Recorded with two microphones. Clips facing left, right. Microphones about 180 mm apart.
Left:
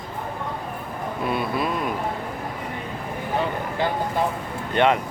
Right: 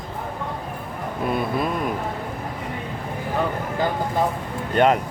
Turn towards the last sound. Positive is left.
turn(degrees=-45)  # may be behind; listen again after turning